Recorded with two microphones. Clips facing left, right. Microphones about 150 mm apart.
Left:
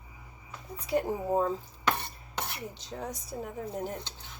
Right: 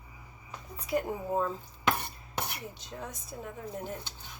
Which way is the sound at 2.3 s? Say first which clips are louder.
Even; 10° right (ahead or behind).